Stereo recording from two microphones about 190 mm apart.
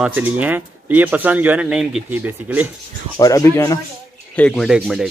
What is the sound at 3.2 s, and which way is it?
Speech, 20° left (ahead or behind).